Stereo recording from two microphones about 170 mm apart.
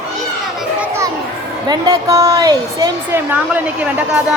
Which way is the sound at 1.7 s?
20° right (ahead or behind).